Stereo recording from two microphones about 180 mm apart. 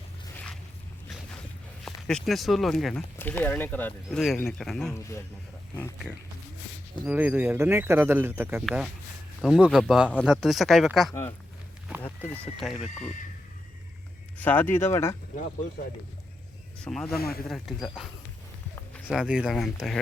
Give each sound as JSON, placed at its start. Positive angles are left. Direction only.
{"t": 1.8, "sound": "speech", "side_deg": 5}
{"t": 7.0, "sound": "speech", "side_deg": -10}
{"t": 11.1, "sound": "speech", "side_deg": 15}
{"t": 12.8, "sound": "speech", "side_deg": 40}
{"t": 14.4, "sound": "speech", "side_deg": 10}
{"t": 16.8, "sound": "speech", "side_deg": 5}
{"t": 17.2, "sound": "speech", "side_deg": 60}
{"t": 17.5, "sound": "speech", "side_deg": 0}
{"t": 19.1, "sound": "speech", "side_deg": -5}